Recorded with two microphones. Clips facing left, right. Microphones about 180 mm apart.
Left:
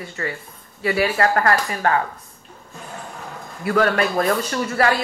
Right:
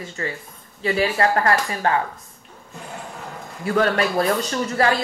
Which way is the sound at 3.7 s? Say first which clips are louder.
Left 1 dB; 30° right (ahead or behind).